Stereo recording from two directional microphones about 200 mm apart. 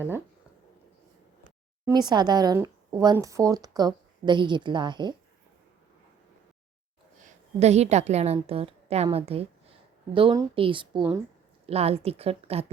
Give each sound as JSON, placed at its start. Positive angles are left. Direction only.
{"t": 1.8, "sound": "speech", "side_deg": -20}
{"t": 7.6, "sound": "a woman's voice", "side_deg": -35}
{"t": 11.6, "sound": "a woman's voice", "side_deg": -30}